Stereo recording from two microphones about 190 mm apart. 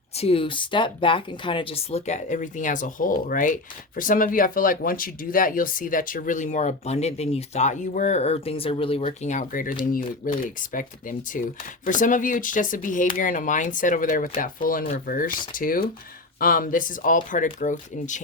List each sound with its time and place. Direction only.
0.1 s speech: 30° left (ahead or behind)